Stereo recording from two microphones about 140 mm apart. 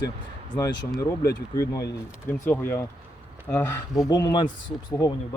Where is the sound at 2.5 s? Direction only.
15° left (ahead or behind).